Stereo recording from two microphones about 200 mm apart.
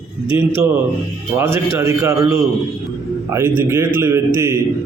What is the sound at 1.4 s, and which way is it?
A man's voice, 15° right (ahead or behind).